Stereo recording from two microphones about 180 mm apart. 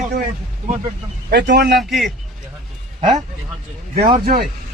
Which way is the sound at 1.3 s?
70° right (ahead or behind).